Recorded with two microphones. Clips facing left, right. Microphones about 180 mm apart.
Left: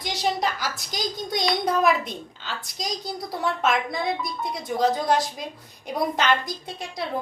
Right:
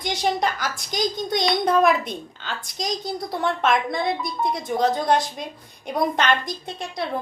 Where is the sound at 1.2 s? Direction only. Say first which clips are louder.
Even; 5° left (ahead or behind).